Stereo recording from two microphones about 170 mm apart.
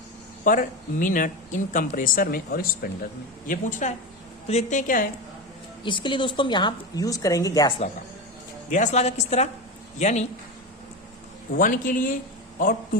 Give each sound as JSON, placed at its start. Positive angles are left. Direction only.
{"t": 0.4, "sound": "speech", "side_deg": 50}
{"t": 5.8, "sound": "a woman's voice", "side_deg": 30}
{"t": 8.7, "sound": "a woman's voice", "side_deg": 45}
{"t": 11.5, "sound": "speech", "side_deg": 50}